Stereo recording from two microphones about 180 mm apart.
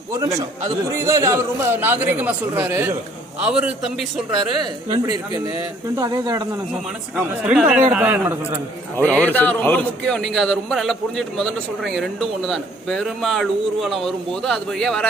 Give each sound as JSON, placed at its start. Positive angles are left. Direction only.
{"t": 0.1, "sound": "a man's voice", "side_deg": -15}
{"t": 4.6, "sound": "speech", "side_deg": -20}
{"t": 7.4, "sound": "a man's voice", "side_deg": -5}
{"t": 9.0, "sound": "a man's voice", "side_deg": 10}